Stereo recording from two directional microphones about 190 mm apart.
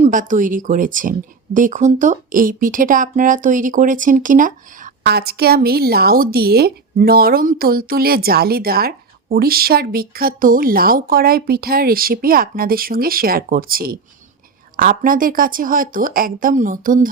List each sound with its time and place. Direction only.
0.0 s speech: 45° right (ahead or behind)